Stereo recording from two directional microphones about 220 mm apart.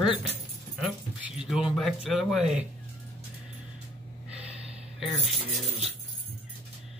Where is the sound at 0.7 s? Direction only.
5° right (ahead or behind).